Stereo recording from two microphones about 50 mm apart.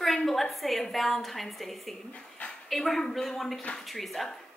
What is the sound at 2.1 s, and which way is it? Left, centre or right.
Dog, left.